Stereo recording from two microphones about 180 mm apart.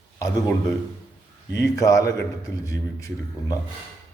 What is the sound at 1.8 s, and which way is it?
A man's voice, 20° left (ahead or behind).